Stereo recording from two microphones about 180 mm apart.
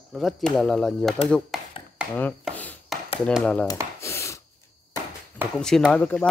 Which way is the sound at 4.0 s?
15° left (ahead or behind).